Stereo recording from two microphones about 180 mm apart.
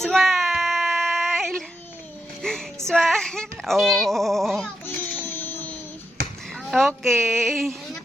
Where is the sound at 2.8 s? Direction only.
Centre (ahead or behind).